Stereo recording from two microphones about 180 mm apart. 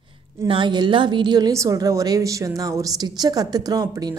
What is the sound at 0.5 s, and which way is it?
A woman's voice, 25° right (ahead or behind).